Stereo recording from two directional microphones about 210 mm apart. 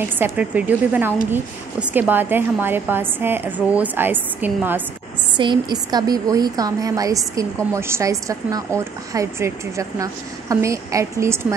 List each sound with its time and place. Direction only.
0.2 s a woman's voice: 5° right (ahead or behind)
5.4 s a woman's voice: 20° right (ahead or behind)